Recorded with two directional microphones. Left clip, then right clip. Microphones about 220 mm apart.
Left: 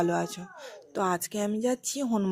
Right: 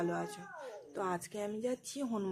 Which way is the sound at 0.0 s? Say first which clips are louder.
Left 9 dB; 35° left (ahead or behind).